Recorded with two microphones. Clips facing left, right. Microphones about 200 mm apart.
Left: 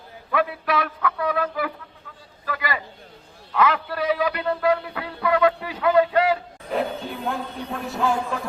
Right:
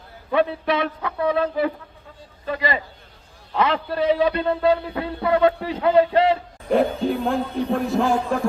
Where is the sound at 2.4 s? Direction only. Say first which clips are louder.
Right 4 dB; 25° right (ahead or behind).